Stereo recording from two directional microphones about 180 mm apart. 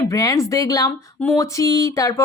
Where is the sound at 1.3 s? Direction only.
20° left (ahead or behind).